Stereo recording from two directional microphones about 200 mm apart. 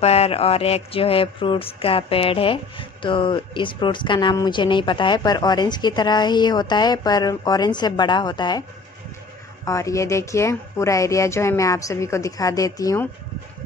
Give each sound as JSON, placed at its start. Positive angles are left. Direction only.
{"t": 0.0, "sound": "speech", "side_deg": 30}
{"t": 9.7, "sound": "a woman's voice", "side_deg": 15}